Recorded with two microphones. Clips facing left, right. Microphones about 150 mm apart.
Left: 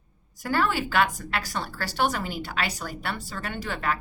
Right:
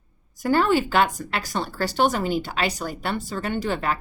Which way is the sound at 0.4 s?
25° right (ahead or behind).